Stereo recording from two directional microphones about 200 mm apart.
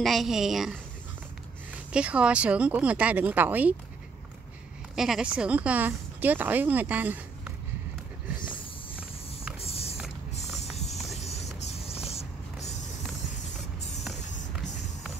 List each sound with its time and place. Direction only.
0.0 s a woman's voice: centre (ahead or behind)
1.9 s speech: 5° right (ahead or behind)
4.9 s speech: centre (ahead or behind)
9.6 s creak: 30° left (ahead or behind)
11.1 s vehicle: 35° left (ahead or behind)